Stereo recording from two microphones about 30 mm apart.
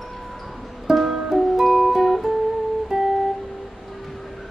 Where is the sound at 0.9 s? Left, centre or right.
Centre.